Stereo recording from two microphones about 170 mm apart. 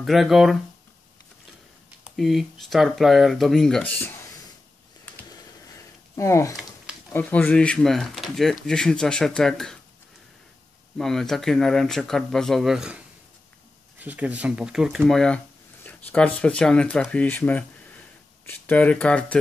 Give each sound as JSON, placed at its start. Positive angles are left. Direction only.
{"t": 0.0, "sound": "speech", "side_deg": 0}
{"t": 2.0, "sound": "speech", "side_deg": 0}
{"t": 6.1, "sound": "speech", "side_deg": 15}
{"t": 11.0, "sound": "speech", "side_deg": 0}